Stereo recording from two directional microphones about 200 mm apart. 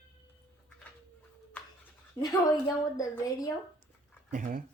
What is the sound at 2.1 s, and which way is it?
A woman's voice, 20° left (ahead or behind).